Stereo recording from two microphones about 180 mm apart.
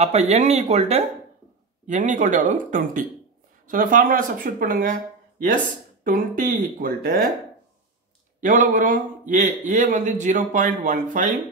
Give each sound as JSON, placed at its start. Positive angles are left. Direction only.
{"t": 0.0, "sound": "a man's voice", "side_deg": -35}
{"t": 6.0, "sound": "a man's voice", "side_deg": -50}
{"t": 8.4, "sound": "a man's voice", "side_deg": -45}